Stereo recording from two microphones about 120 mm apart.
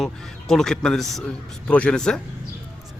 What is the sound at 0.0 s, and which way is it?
A man's voice, 5° left (ahead or behind).